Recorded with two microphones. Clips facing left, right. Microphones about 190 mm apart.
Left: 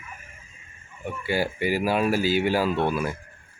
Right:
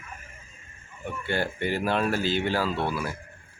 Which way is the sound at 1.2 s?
5° left (ahead or behind).